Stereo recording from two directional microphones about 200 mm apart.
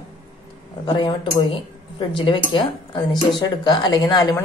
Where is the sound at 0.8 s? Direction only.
25° left (ahead or behind).